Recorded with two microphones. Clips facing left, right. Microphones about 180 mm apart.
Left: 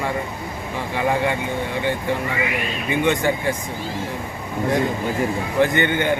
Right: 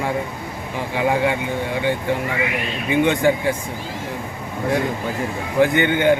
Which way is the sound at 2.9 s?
15° right (ahead or behind).